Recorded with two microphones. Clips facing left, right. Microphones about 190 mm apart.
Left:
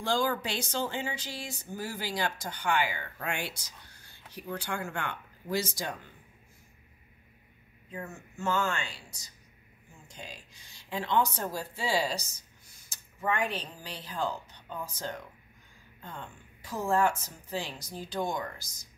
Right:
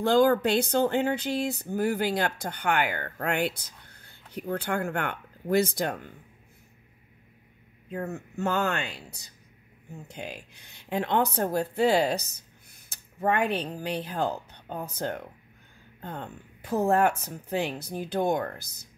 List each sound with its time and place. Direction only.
0.0 s speech: 55° right (ahead or behind)
7.9 s a woman's voice: 60° right (ahead or behind)